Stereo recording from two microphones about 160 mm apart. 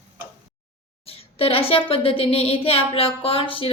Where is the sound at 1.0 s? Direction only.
35° left (ahead or behind).